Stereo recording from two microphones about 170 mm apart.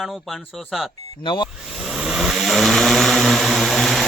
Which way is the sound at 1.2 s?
30° left (ahead or behind).